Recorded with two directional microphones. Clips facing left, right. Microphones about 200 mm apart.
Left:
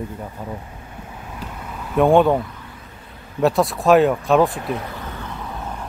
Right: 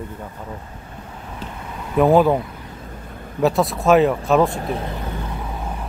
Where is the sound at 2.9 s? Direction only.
50° right (ahead or behind).